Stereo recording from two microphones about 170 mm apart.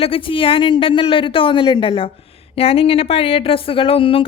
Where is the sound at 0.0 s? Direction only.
30° left (ahead or behind).